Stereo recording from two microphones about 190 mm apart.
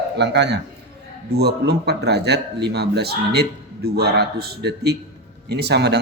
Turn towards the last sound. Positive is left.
turn(degrees=-60)  # may be behind; listen again after turning